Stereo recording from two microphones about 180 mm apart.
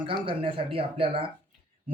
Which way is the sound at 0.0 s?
30° right (ahead or behind).